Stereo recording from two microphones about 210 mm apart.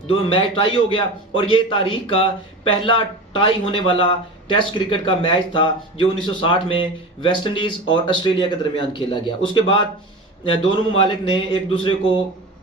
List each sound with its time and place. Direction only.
0.1 s speech: 25° left (ahead or behind)
3.3 s speech: 25° left (ahead or behind)